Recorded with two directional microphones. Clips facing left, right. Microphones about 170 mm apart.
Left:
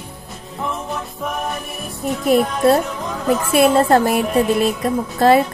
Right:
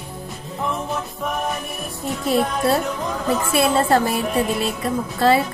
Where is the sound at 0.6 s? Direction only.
Centre (ahead or behind).